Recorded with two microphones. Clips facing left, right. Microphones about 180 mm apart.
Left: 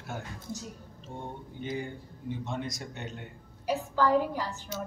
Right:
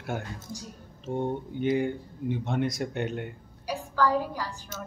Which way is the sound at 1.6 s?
60° right (ahead or behind).